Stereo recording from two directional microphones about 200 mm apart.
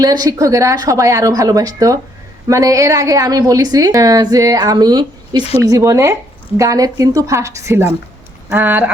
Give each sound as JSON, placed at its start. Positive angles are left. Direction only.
{"t": 0.0, "sound": "a woman's voice", "side_deg": -20}